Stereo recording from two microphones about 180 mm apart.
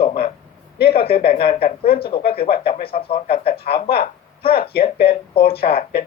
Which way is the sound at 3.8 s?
60° left (ahead or behind).